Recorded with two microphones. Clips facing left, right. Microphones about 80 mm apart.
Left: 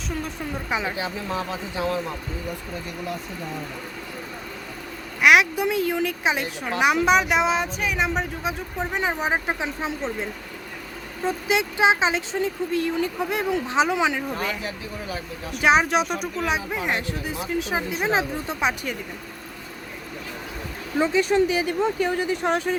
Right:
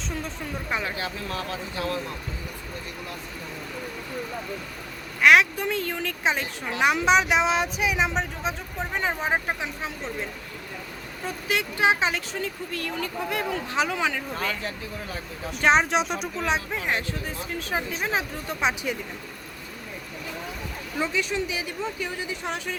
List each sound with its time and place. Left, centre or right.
0.7 s speech: centre
5.2 s speech: centre
9.8 s speech: left
11.3 s speech: centre
18.6 s speech: centre
21.0 s speech: left
21.2 s speech: left